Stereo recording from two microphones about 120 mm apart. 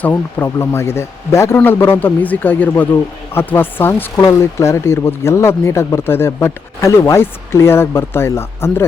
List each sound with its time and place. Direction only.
0.0 s speech: 15° left (ahead or behind)